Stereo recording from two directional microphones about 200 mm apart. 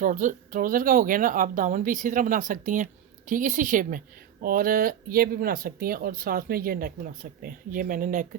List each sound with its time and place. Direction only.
0.0 s speech: 40° right (ahead or behind)